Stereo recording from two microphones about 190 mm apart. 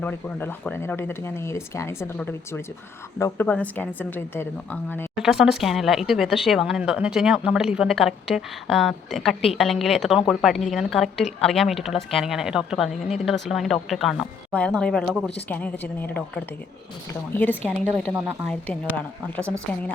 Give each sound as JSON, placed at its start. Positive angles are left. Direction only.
{"t": 0.0, "sound": "speech", "side_deg": 10}
{"t": 5.1, "sound": "speech", "side_deg": 0}
{"t": 17.7, "sound": "speech", "side_deg": 0}